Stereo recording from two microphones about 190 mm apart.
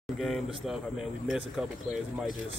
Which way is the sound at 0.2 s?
Centre (ahead or behind).